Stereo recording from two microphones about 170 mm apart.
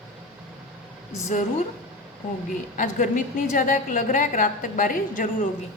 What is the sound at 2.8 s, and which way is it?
A woman's voice, 50° left (ahead or behind).